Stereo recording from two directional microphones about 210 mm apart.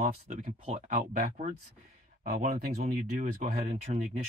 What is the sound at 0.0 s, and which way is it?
Speech, 35° right (ahead or behind).